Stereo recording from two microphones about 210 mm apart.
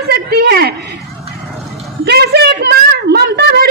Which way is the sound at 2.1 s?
50° right (ahead or behind).